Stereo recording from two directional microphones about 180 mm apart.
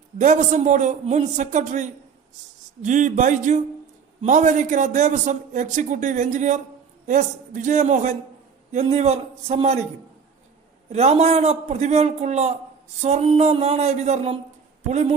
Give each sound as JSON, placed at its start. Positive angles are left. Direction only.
{"t": 0.2, "sound": "a man's voice", "side_deg": -40}
{"t": 10.8, "sound": "a man's voice", "side_deg": -35}